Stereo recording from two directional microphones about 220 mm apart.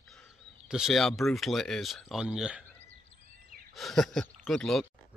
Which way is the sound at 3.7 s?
Centre (ahead or behind).